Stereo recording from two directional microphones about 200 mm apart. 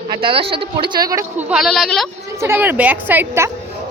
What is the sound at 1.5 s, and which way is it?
Speech, centre (ahead or behind).